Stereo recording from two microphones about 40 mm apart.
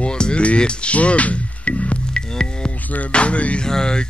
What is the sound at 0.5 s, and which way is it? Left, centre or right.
Music, left.